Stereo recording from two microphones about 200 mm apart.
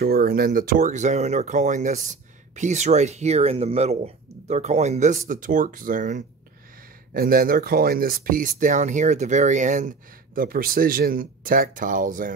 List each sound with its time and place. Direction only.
0.0 s speech: 50° right (ahead or behind)